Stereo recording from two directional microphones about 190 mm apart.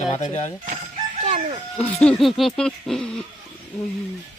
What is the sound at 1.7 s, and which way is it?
Speech, 5° left (ahead or behind).